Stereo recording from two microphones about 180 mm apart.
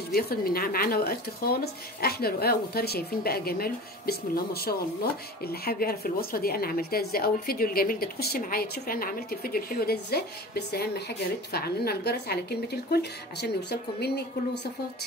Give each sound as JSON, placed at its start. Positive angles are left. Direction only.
{"t": 0.1, "sound": "a woman's voice", "side_deg": 60}